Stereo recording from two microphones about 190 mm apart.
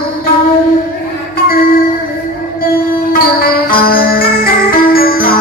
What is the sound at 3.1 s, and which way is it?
Music, 50° left (ahead or behind).